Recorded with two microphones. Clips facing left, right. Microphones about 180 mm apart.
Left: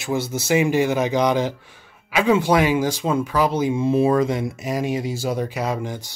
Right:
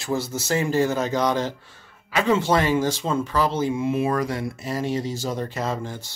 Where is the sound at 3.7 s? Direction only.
30° left (ahead or behind).